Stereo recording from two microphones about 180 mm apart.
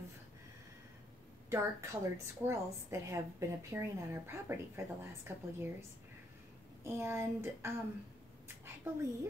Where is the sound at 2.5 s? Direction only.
15° right (ahead or behind).